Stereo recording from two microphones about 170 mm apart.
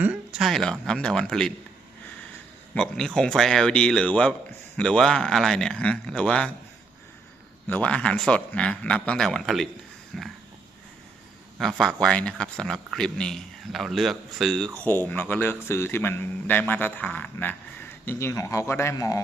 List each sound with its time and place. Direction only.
0.3 s speech: centre (ahead or behind)
2.7 s speech: 5° left (ahead or behind)
7.7 s speech: 5° left (ahead or behind)
11.6 s speech: centre (ahead or behind); by 19.2 s 20° left (ahead or behind)